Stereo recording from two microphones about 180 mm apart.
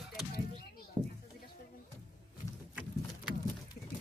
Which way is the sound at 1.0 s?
30° right (ahead or behind).